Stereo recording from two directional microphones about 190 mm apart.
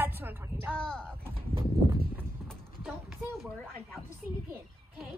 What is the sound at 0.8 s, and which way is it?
Speech, 5° left (ahead or behind).